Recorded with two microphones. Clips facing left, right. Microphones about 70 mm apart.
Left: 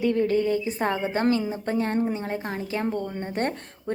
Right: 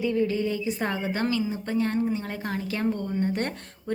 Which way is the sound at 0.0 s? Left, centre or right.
Left.